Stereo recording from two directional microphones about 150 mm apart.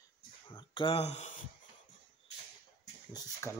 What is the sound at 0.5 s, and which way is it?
Speech, 35° left (ahead or behind).